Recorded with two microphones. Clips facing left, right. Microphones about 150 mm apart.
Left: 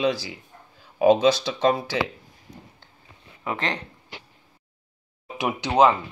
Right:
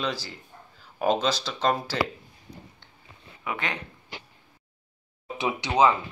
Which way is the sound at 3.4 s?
30° left (ahead or behind).